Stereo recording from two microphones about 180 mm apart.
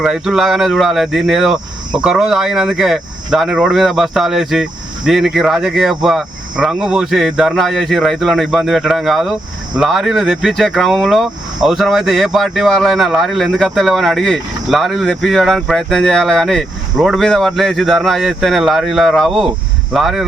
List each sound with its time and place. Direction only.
0.0 s speech: 5° right (ahead or behind)